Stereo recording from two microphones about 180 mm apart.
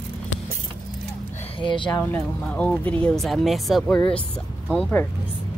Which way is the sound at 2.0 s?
10° left (ahead or behind).